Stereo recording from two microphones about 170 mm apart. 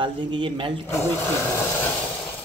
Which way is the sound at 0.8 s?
15° left (ahead or behind).